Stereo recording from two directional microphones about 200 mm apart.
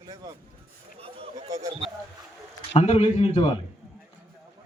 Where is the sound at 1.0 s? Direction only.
30° right (ahead or behind).